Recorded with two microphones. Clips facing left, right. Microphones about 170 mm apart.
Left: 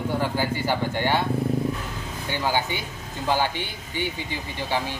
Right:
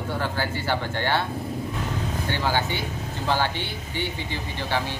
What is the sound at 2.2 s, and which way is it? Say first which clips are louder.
Speech: left 1 dB; 15° left (ahead or behind).